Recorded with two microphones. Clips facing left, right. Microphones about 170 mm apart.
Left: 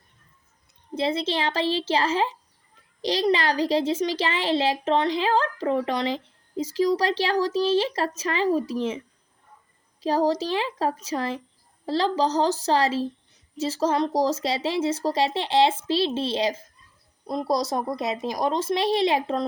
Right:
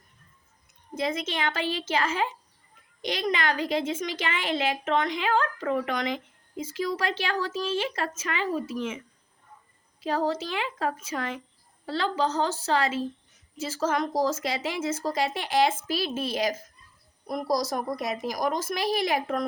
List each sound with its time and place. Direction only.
0.9 s a child's voice: 30° left (ahead or behind)
10.0 s a child's voice: 35° left (ahead or behind)